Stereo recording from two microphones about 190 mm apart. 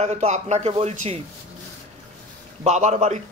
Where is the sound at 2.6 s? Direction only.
40° right (ahead or behind).